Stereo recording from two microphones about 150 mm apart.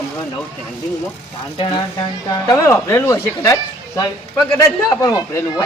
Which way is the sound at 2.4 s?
20° left (ahead or behind).